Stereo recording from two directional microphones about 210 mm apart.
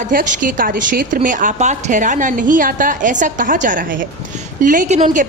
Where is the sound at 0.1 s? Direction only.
40° right (ahead or behind).